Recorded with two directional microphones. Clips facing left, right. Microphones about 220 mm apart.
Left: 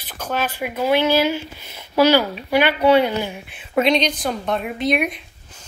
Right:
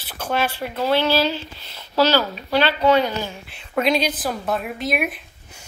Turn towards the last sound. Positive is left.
turn(degrees=-5)  # may be behind; listen again after turning